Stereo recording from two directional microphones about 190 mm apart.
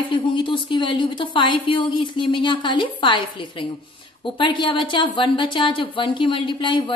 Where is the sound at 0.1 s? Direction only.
25° left (ahead or behind).